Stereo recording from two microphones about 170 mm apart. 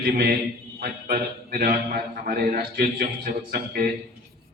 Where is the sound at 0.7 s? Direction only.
55° right (ahead or behind).